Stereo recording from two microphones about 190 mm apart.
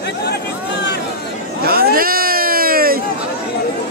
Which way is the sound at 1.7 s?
50° right (ahead or behind).